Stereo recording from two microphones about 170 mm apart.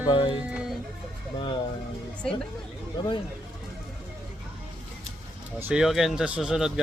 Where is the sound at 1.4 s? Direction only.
25° left (ahead or behind).